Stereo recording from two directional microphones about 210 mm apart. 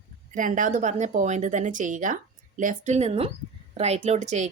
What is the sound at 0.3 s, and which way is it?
Speech, 40° right (ahead or behind).